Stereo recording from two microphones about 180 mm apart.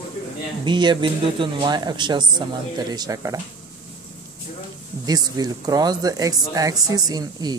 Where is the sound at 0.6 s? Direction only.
25° right (ahead or behind).